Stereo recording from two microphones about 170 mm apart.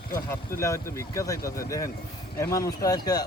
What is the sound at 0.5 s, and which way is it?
Speech, 60° left (ahead or behind).